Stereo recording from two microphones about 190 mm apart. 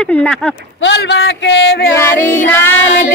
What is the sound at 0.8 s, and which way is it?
A man's voice, 65° left (ahead or behind).